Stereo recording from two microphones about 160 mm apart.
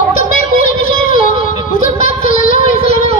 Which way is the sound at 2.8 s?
40° right (ahead or behind).